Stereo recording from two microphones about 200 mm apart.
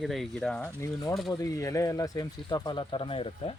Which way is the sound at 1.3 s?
15° left (ahead or behind).